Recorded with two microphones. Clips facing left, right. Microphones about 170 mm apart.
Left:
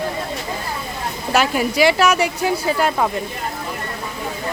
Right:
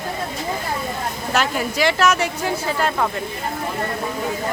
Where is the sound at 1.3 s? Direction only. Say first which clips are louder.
Left 4 dB; 10° left (ahead or behind).